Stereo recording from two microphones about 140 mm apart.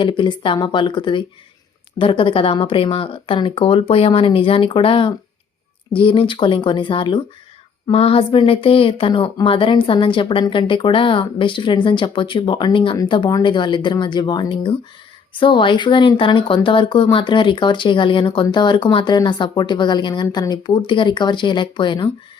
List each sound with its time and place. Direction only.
0.0 s speech: 35° left (ahead or behind)